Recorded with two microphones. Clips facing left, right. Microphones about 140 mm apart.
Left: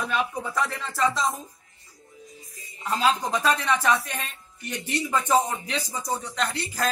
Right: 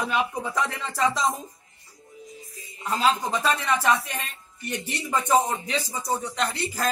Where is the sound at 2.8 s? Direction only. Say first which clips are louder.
Even; 15° right (ahead or behind).